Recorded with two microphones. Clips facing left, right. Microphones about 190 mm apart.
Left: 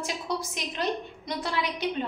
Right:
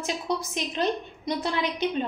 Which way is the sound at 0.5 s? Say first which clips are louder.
Right 3 dB; 20° right (ahead or behind).